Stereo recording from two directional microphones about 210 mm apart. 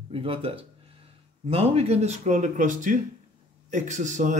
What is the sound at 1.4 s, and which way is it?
Speech, 30° right (ahead or behind).